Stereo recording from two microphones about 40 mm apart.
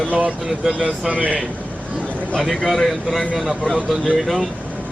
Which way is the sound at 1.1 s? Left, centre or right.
Right.